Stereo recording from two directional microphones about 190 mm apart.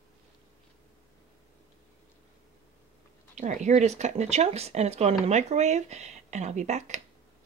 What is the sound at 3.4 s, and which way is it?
Speech, 40° right (ahead or behind).